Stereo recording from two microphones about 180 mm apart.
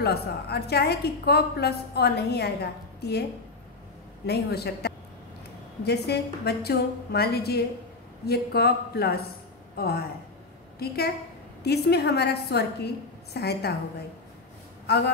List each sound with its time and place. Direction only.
0.0 s a woman's voice: 65° left (ahead or behind)
4.3 s a woman's voice: 65° left (ahead or behind)
14.9 s a woman's voice: 65° left (ahead or behind)